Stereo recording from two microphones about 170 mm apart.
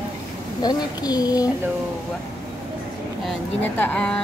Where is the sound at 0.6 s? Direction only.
25° left (ahead or behind).